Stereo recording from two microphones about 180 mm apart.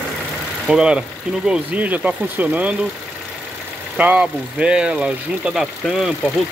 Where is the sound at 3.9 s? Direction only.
5° right (ahead or behind).